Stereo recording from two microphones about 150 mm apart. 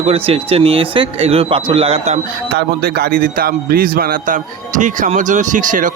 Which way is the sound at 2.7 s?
90° right.